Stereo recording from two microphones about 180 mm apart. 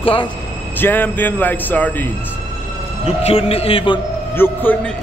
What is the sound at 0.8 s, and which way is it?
Speech, 10° left (ahead or behind).